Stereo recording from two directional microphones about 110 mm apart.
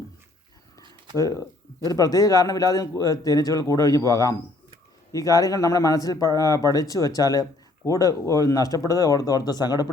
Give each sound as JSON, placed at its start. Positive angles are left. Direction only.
{"t": 1.1, "sound": "a man's voice", "side_deg": 30}